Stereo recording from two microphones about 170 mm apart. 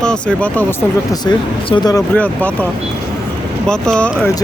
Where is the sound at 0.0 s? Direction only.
5° left (ahead or behind).